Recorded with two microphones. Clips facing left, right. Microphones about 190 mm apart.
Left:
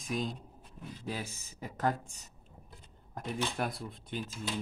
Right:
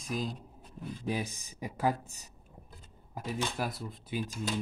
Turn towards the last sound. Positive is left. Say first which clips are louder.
# right 3 dB
turn(degrees=-5)  # may be behind; listen again after turning